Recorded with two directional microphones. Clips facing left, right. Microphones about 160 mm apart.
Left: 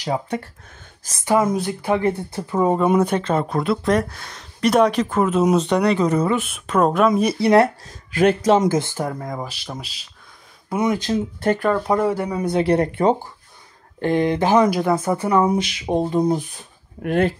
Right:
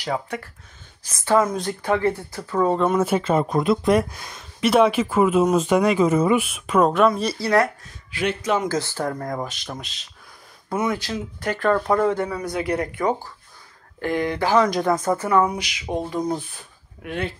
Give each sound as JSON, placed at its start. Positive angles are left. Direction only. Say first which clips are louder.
{"t": 1.0, "sound": "speech", "louder": "even", "side_deg": 45}
{"t": 1.7, "sound": "speech", "louder": "left 1 dB", "side_deg": 15}
{"t": 3.0, "sound": "speech", "louder": "even", "side_deg": -5}
{"t": 7.1, "sound": "speech", "louder": "left 5 dB", "side_deg": 15}
{"t": 7.6, "sound": "speech", "louder": "left 4 dB", "side_deg": 40}
{"t": 8.6, "sound": "speech", "louder": "left 3 dB", "side_deg": 20}
{"t": 10.7, "sound": "speech", "louder": "left 4 dB", "side_deg": 20}
{"t": 12.4, "sound": "speech", "louder": "left 6 dB", "side_deg": 25}
{"t": 14.7, "sound": "speech", "louder": "left 1 dB", "side_deg": 10}
{"t": 17.0, "sound": "speech", "louder": "left 9 dB", "side_deg": 45}